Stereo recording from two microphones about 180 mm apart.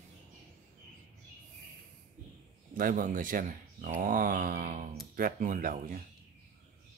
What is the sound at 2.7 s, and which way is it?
Speech, 50° right (ahead or behind).